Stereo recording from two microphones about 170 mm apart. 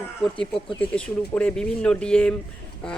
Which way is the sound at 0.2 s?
5° left (ahead or behind).